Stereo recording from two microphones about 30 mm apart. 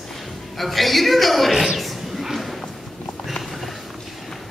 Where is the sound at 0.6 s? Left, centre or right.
Centre.